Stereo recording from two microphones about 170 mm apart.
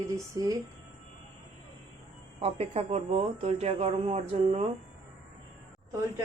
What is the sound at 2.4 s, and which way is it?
Speech, 40° right (ahead or behind).